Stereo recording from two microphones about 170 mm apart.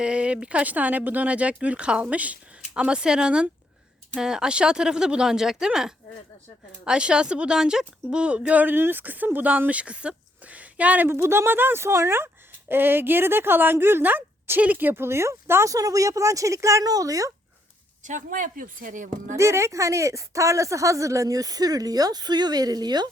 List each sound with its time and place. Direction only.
0.0 s a woman's voice: 5° right (ahead or behind)
18.0 s speech: 50° right (ahead or behind)
19.4 s speech: 15° right (ahead or behind)